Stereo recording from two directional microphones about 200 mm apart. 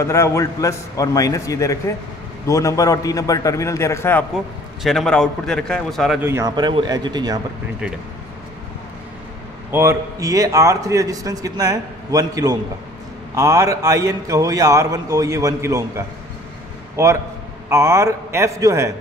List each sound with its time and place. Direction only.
0.0 s a man's voice: 15° left (ahead or behind)
6.2 s speech: 15° right (ahead or behind)
9.7 s a man's voice: 15° right (ahead or behind)
16.9 s a man's voice: 15° right (ahead or behind)